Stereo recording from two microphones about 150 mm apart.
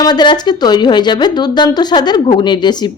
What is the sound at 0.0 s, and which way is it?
A woman's voice, 30° left (ahead or behind).